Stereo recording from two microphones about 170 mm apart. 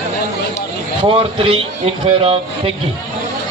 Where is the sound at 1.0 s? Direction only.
35° right (ahead or behind).